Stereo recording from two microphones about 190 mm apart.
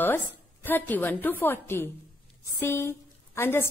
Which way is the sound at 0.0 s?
10° left (ahead or behind).